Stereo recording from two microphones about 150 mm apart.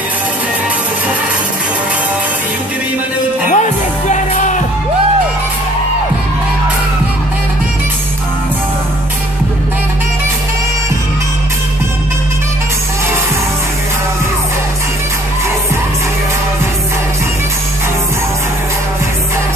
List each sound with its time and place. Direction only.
3.5 s music: 50° left (ahead or behind)